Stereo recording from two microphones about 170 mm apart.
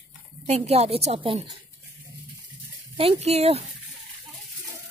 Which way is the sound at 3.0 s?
35° right (ahead or behind).